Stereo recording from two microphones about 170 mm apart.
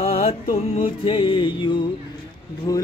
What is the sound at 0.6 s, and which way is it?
Music, 35° left (ahead or behind).